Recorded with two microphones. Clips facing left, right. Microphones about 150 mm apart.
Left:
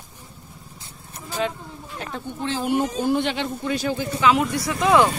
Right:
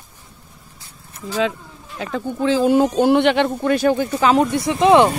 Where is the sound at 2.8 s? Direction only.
85° right; by 4.5 s 40° right (ahead or behind).